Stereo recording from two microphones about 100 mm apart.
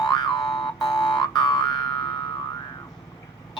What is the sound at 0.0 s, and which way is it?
Boing, 45° left (ahead or behind).